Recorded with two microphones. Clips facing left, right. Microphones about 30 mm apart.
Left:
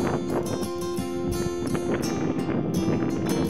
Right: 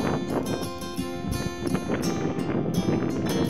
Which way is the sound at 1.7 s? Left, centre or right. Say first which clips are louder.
Right 1 dB; centre.